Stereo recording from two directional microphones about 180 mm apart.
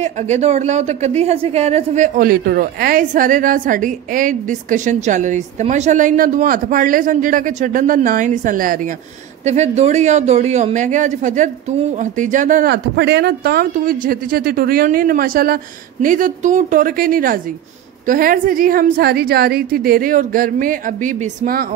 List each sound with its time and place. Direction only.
0.0 s a woman's voice: 40° right (ahead or behind)
12.6 s a woman's voice: 70° right (ahead or behind); by 21.6 s 50° right (ahead or behind)